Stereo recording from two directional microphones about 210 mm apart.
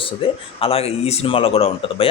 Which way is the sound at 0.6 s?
30° left (ahead or behind).